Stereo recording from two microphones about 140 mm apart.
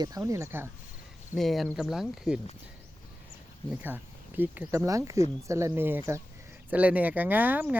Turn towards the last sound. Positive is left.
turn(degrees=-10)  # may be behind; listen again after turning